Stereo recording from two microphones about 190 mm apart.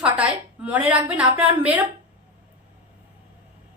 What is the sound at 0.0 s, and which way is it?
A woman's voice, 5° right (ahead or behind).